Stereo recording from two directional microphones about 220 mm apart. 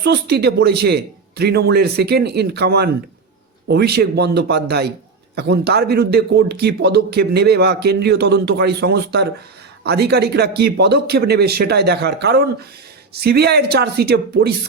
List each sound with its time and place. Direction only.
0.0 s speech: 50° right (ahead or behind)